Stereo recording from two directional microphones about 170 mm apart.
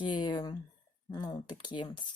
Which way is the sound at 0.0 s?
25° left (ahead or behind).